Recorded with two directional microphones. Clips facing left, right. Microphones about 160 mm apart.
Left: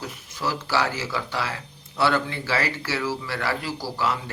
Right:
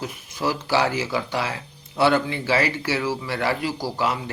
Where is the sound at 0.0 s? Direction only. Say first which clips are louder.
Right 3 dB; 15° right (ahead or behind).